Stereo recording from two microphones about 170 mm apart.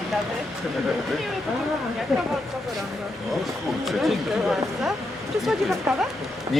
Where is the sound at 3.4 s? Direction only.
Centre (ahead or behind).